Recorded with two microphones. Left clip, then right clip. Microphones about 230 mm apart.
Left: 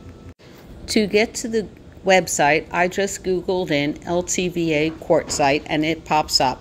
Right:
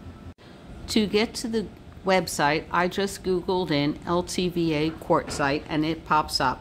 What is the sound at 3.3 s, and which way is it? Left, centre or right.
Speech, centre.